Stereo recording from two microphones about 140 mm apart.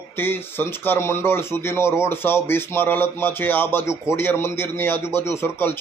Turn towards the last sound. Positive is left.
turn(degrees=15)  # may be behind; listen again after turning